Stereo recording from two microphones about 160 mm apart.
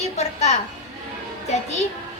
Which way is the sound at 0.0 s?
45° left (ahead or behind).